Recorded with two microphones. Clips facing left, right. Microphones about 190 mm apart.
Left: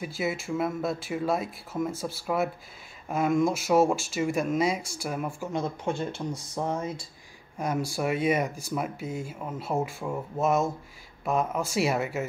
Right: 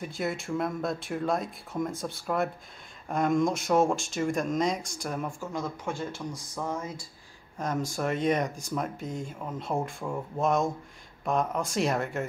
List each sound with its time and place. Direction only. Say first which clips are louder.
0.0 s speech: left 1 dB; 5° left (ahead or behind)
5.5 s speech: left 4 dB; 25° left (ahead or behind)
7.5 s speech: left 2 dB; 10° left (ahead or behind)